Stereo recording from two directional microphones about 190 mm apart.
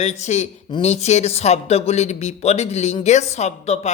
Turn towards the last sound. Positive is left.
turn(degrees=35)  # may be behind; listen again after turning